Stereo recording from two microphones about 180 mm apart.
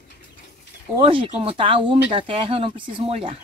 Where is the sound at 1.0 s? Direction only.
30° right (ahead or behind).